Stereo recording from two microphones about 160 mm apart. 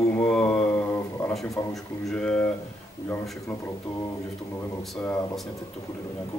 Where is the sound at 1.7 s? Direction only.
5° left (ahead or behind).